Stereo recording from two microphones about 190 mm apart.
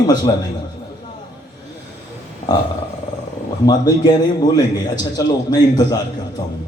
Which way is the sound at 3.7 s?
20° left (ahead or behind).